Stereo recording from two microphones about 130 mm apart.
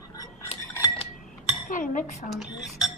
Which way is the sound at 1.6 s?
90° left.